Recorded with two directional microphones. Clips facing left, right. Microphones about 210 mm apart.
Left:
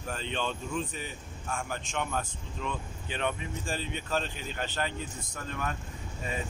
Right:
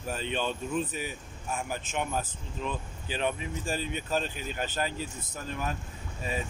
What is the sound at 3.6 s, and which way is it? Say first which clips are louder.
Speech: right 3 dB; 10° right (ahead or behind).